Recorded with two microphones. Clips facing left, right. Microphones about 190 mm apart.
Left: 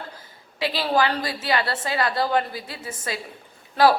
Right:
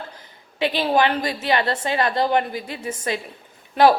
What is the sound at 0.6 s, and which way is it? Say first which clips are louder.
A woman's voice: right 3 dB; 20° right (ahead or behind).